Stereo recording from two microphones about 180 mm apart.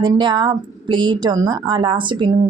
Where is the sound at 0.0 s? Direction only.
25° right (ahead or behind).